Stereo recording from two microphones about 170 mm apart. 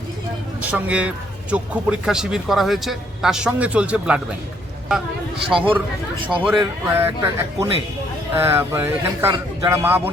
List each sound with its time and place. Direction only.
0.6 s speech: 10° right (ahead or behind)
5.5 s speech: centre (ahead or behind)